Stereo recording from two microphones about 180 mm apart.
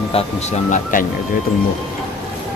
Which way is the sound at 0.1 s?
40° left (ahead or behind).